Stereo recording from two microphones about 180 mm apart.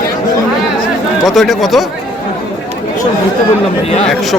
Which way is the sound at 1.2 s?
Centre (ahead or behind).